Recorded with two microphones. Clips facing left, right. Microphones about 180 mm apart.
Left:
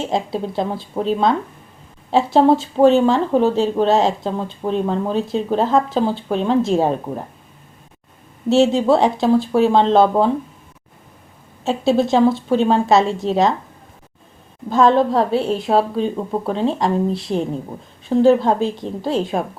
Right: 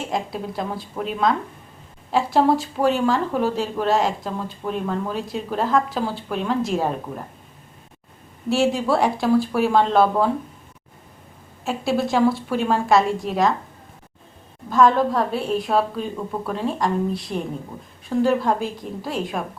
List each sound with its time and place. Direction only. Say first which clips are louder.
0.0 s speech: left 5 dB; 25° left (ahead or behind)
8.4 s speech: left 6 dB; 25° left (ahead or behind)
11.6 s speech: left 6 dB; 25° left (ahead or behind)
14.7 s speech: left 3 dB; 25° left (ahead or behind)